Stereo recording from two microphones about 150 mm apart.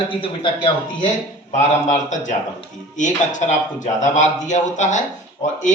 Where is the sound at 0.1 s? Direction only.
35° left (ahead or behind).